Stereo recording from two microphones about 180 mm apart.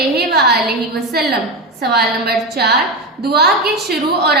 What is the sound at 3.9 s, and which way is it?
Speech, 60° right (ahead or behind).